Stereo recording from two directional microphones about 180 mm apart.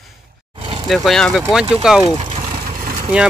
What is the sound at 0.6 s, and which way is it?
Vehicle, 30° right (ahead or behind).